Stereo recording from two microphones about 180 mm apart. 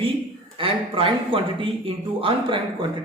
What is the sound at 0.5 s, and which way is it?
Speech, 30° right (ahead or behind).